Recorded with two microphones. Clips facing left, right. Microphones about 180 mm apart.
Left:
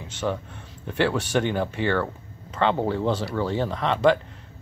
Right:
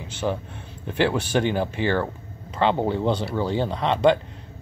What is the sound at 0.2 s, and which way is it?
Speech, 15° right (ahead or behind).